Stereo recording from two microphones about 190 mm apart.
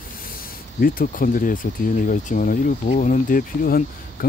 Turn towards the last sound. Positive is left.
turn(degrees=50)  # may be behind; listen again after turning